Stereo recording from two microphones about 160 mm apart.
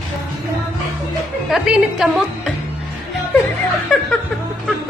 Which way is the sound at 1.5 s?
5° right (ahead or behind).